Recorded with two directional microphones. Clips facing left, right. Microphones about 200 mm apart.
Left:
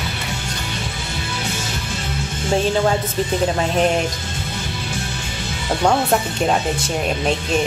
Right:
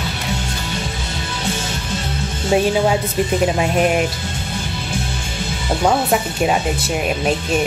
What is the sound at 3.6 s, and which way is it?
Speech, 10° right (ahead or behind).